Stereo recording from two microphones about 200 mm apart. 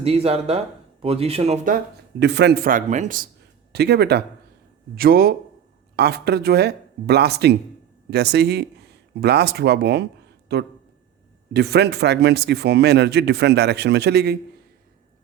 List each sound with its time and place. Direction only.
0.0 s speech: 30° right (ahead or behind)
2.1 s speech: 60° right (ahead or behind); by 3.2 s 40° right (ahead or behind)
3.7 s a man's voice: 55° right (ahead or behind)